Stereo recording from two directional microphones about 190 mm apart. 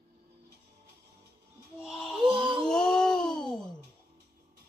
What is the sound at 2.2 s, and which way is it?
Music, 30° right (ahead or behind).